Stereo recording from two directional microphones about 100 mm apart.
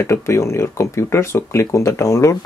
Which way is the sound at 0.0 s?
25° left (ahead or behind).